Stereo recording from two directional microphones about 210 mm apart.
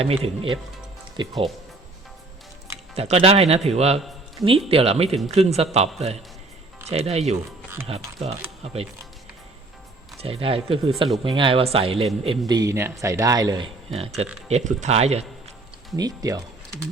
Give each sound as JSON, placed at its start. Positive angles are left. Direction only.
{"t": 0.0, "sound": "speech", "side_deg": -25}
{"t": 2.9, "sound": "speech", "side_deg": -30}
{"t": 6.9, "sound": "speech", "side_deg": -30}
{"t": 10.2, "sound": "speech", "side_deg": -30}
{"t": 12.5, "sound": "speech", "side_deg": -15}
{"t": 14.4, "sound": "speech", "side_deg": -35}
{"t": 16.0, "sound": "speech", "side_deg": -15}